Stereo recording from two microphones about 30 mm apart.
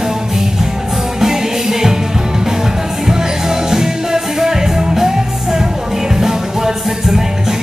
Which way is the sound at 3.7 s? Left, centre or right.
Centre.